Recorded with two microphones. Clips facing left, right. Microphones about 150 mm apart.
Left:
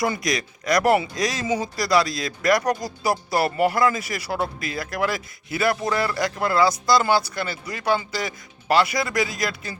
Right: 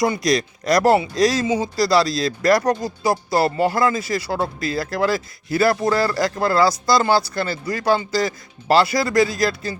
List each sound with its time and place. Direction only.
0.3 s speech: 30° right (ahead or behind)